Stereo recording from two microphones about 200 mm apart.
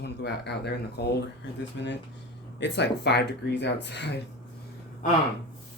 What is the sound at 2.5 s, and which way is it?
Speech, 60° left (ahead or behind).